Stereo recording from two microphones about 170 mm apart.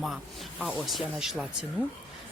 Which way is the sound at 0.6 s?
Centre (ahead or behind).